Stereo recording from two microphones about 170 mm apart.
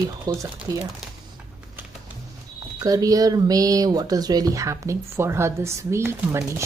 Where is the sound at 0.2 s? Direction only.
20° right (ahead or behind).